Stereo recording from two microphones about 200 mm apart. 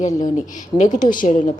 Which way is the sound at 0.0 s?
40° left (ahead or behind).